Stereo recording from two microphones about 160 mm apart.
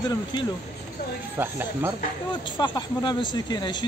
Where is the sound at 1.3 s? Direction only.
15° right (ahead or behind).